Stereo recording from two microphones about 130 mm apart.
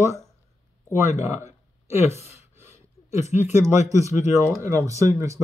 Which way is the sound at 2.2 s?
55° left (ahead or behind).